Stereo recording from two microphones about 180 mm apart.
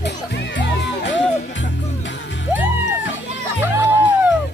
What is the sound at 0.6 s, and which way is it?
Music, 75° left (ahead or behind).